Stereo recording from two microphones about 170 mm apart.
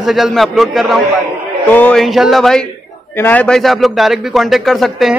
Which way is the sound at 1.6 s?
10° left (ahead or behind).